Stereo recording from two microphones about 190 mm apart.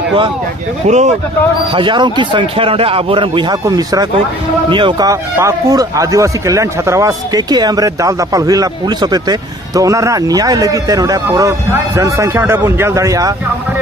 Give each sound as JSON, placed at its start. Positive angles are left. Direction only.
{"t": 0.8, "sound": "speech", "side_deg": -40}
{"t": 1.7, "sound": "a man's voice", "side_deg": -25}